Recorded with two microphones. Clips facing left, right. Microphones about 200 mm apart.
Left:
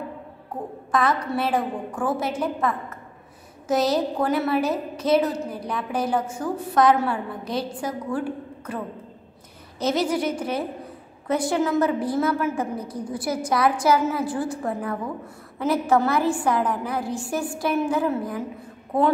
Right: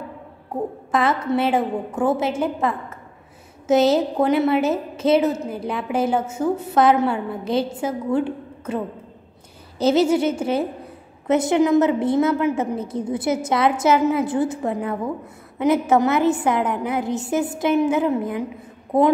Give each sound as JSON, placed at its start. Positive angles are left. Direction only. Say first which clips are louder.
{"t": 0.9, "sound": "a woman's voice", "louder": "right 3 dB", "side_deg": -25}